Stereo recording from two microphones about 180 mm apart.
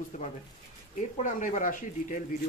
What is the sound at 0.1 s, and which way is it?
Speech, 45° left (ahead or behind).